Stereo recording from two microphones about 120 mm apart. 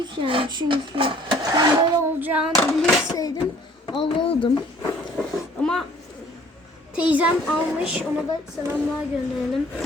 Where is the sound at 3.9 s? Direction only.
45° left (ahead or behind).